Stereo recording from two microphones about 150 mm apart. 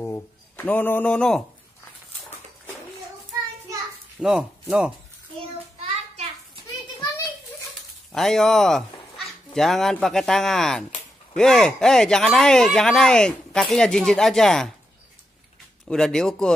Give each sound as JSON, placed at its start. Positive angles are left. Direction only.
{"t": 0.0, "sound": "speech", "side_deg": 15}
{"t": 4.2, "sound": "speech", "side_deg": -5}
{"t": 5.4, "sound": "a sound", "side_deg": -40}
{"t": 8.1, "sound": "speech", "side_deg": 0}
{"t": 15.9, "sound": "speech", "side_deg": 5}